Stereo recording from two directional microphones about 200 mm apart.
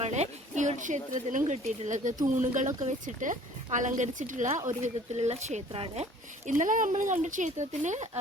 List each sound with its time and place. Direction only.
0.0 s speech: 35° right (ahead or behind)